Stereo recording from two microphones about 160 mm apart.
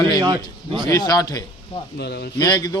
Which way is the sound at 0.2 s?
30° right (ahead or behind).